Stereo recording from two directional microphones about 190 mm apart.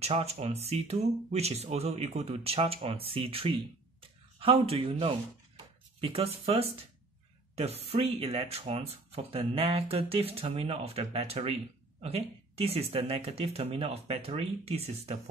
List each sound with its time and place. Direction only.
0.0 s speech: 35° right (ahead or behind)